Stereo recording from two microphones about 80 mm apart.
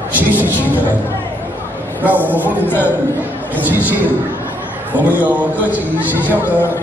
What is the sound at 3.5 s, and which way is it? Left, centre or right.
A man's voice, right.